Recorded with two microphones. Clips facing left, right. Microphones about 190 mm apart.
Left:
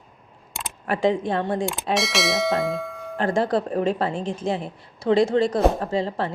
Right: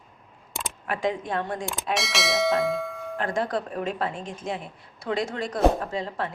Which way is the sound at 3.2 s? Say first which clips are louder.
Left 6 dB; 30° left (ahead or behind).